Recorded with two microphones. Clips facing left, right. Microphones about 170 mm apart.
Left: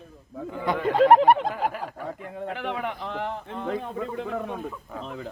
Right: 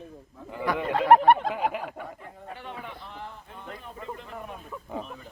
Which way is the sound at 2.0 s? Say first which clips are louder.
Left 8 dB; 85° left.